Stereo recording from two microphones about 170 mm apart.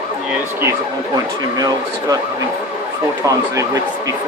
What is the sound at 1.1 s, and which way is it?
Speech, 20° right (ahead or behind).